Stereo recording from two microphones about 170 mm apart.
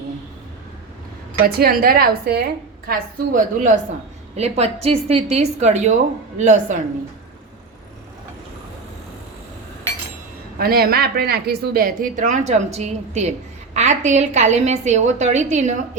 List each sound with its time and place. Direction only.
1.5 s a woman's voice: 65° right (ahead or behind)
2.8 s a woman's voice: 55° right (ahead or behind)
4.4 s a woman's voice: 40° right (ahead or behind)
10.6 s a woman's voice: 60° right (ahead or behind); by 15.7 s 45° right (ahead or behind)